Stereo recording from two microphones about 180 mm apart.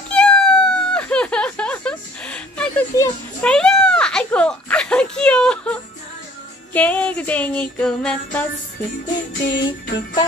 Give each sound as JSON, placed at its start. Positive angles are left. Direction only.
{"t": 0.1, "sound": "cat", "side_deg": 5}
{"t": 2.9, "sound": "music", "side_deg": 15}
{"t": 3.4, "sound": "a child's voice", "side_deg": 5}
{"t": 6.7, "sound": "music", "side_deg": 10}
{"t": 9.4, "sound": "music", "side_deg": 75}